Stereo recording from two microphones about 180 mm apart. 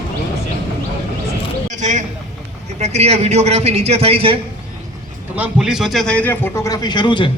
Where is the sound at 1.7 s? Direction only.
40° right (ahead or behind).